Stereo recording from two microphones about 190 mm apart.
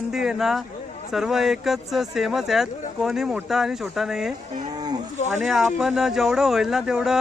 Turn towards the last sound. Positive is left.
turn(degrees=-5)  # may be behind; listen again after turning